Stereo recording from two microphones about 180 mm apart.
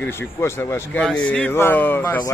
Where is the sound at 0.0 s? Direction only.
15° left (ahead or behind).